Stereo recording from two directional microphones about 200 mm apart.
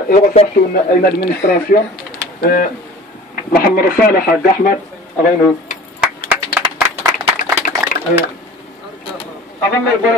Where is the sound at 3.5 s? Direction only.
45° left (ahead or behind).